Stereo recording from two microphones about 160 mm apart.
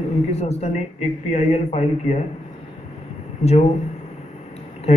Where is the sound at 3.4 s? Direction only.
40° left (ahead or behind).